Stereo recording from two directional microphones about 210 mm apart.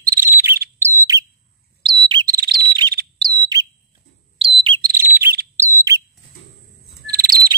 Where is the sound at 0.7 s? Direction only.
10° right (ahead or behind).